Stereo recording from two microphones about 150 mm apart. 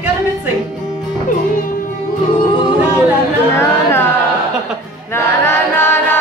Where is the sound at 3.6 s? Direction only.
15° left (ahead or behind).